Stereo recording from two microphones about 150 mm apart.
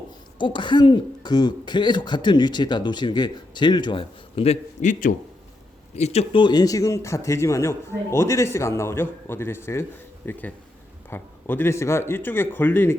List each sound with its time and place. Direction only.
0.3 s speech: 30° left (ahead or behind)
4.8 s a man's voice: 60° left (ahead or behind)
6.0 s a man's voice: 45° left (ahead or behind); by 12.9 s 15° left (ahead or behind)